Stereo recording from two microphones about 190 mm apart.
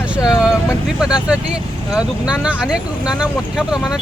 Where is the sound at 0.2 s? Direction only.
20° left (ahead or behind).